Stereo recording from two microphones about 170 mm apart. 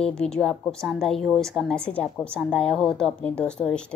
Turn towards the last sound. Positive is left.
turn(degrees=5)  # may be behind; listen again after turning